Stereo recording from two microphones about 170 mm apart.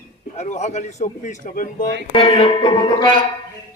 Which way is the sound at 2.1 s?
30° left (ahead or behind).